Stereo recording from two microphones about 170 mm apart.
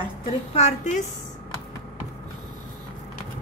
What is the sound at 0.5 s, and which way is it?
Speech, 40° left (ahead or behind).